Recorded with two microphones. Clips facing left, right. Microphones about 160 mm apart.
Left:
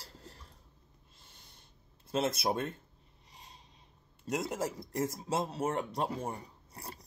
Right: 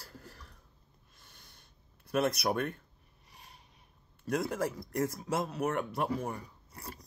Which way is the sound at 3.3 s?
20° left (ahead or behind).